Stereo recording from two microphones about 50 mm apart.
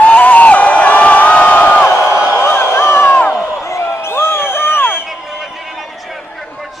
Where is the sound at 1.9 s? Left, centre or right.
Left.